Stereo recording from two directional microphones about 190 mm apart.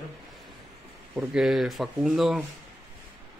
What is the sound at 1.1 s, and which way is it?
Speech, 5° right (ahead or behind).